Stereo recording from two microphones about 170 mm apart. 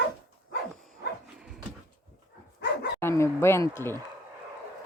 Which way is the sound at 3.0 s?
15° left (ahead or behind).